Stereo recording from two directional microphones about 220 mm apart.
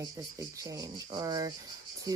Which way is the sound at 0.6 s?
15° right (ahead or behind).